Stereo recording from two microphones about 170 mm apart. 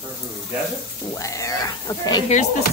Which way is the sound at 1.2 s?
20° left (ahead or behind).